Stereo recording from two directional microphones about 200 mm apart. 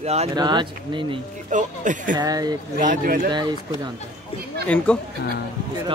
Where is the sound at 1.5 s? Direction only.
40° right (ahead or behind).